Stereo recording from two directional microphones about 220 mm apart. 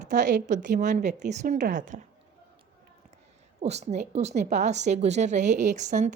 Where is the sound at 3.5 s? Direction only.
30° right (ahead or behind).